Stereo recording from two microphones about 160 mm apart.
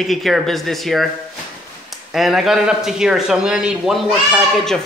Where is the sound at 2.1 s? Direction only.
Centre (ahead or behind).